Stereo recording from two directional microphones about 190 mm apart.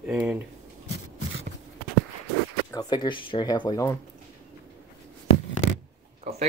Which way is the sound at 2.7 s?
20° left (ahead or behind).